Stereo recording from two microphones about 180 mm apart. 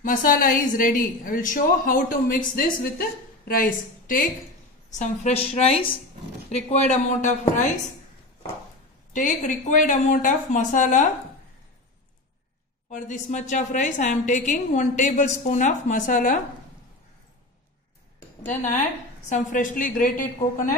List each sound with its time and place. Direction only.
0.0 s a woman's voice: 50° left (ahead or behind)
4.9 s a woman's voice: 40° left (ahead or behind)
9.1 s a woman's voice: 45° left (ahead or behind)
12.9 s a woman's voice: 45° left (ahead or behind)
18.5 s a woman's voice: 40° left (ahead or behind)